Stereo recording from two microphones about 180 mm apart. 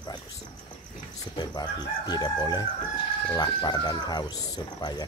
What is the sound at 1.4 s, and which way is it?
Speech, 25° left (ahead or behind).